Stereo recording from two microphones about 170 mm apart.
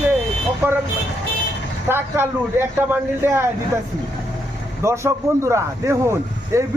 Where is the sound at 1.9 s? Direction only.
15° right (ahead or behind).